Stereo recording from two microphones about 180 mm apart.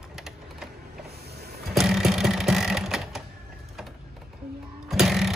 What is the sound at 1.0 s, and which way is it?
Printer, 65° right (ahead or behind).